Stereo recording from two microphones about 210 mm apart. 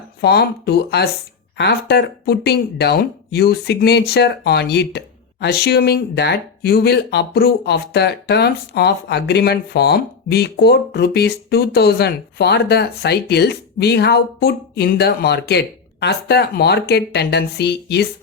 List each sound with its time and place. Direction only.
0.2 s speech: 50° left (ahead or behind)